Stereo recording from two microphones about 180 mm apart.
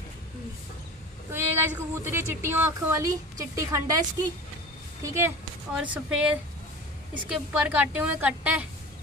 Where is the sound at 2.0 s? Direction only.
10° right (ahead or behind).